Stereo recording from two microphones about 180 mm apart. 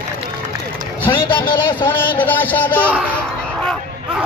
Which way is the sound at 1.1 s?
25° left (ahead or behind).